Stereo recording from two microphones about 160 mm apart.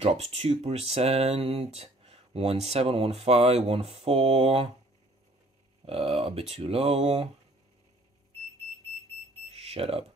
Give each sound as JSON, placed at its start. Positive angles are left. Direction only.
{"t": 0.0, "sound": "speech", "side_deg": -40}
{"t": 5.9, "sound": "speech", "side_deg": -40}
{"t": 9.5, "sound": "alarm", "side_deg": -40}